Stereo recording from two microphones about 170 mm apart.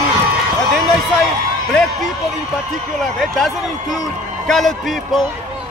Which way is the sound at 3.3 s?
Centre (ahead or behind).